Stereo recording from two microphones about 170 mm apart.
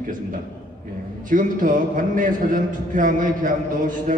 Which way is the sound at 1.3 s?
50° right (ahead or behind).